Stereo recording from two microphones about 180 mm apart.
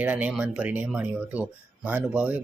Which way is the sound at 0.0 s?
10° right (ahead or behind).